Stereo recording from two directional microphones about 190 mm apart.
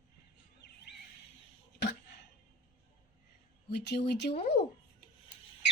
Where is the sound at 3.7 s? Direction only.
60° left (ahead or behind).